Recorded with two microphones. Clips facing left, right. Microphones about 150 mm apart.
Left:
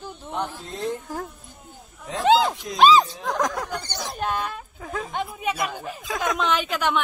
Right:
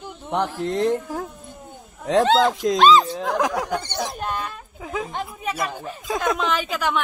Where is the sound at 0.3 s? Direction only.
80° right.